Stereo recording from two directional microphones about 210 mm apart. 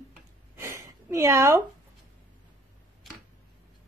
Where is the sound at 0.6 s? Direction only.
15° right (ahead or behind).